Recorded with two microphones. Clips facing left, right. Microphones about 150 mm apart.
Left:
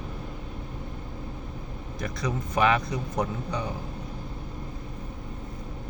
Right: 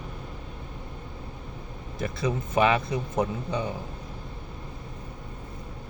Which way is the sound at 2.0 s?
25° right (ahead or behind).